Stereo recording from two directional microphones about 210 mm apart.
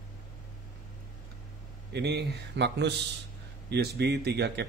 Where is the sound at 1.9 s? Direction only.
55° right (ahead or behind).